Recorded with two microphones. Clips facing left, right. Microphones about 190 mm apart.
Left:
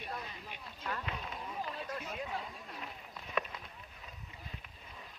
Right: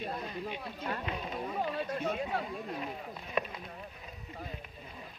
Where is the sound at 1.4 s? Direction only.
65° right (ahead or behind).